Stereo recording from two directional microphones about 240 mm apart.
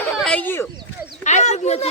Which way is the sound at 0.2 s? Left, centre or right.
Centre.